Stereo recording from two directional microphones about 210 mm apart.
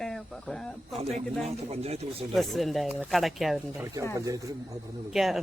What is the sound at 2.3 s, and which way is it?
Speech, centre (ahead or behind).